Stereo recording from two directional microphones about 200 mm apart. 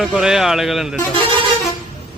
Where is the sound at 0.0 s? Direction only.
Centre (ahead or behind).